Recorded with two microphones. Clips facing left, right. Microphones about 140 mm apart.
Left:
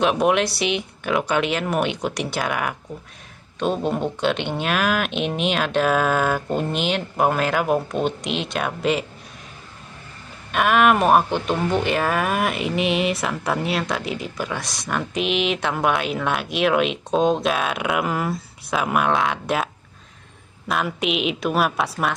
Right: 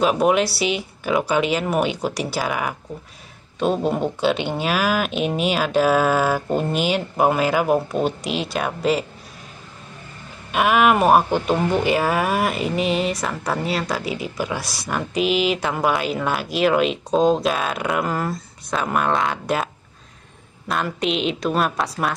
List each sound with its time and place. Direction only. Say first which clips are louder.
0.0 s speech: right 1 dB; 5° right (ahead or behind)
10.5 s speech: even; 5° right (ahead or behind)